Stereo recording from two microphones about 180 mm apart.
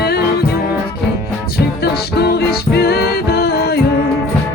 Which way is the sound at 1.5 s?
65° left (ahead or behind).